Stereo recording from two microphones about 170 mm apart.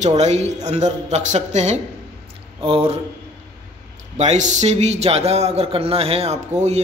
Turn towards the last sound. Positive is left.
turn(degrees=-40)  # may be behind; listen again after turning